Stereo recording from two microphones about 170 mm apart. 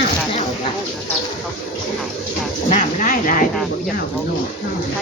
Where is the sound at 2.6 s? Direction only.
40° left (ahead or behind).